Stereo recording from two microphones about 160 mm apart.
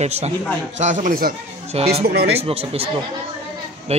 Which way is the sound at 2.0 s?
90° right.